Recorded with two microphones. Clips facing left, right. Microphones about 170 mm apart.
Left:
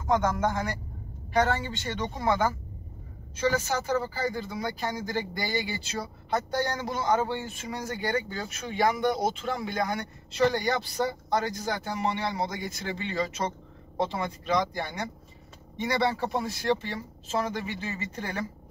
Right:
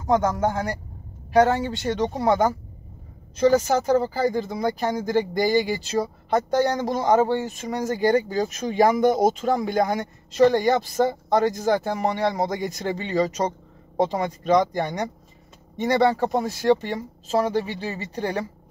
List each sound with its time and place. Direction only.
0.0 s speech: 35° right (ahead or behind)